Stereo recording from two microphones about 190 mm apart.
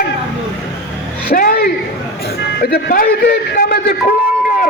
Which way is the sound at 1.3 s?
50° left (ahead or behind).